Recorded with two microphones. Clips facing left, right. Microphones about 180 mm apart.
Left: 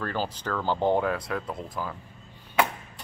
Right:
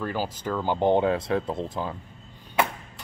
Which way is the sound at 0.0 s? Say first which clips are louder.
Right 1 dB; 10° right (ahead or behind).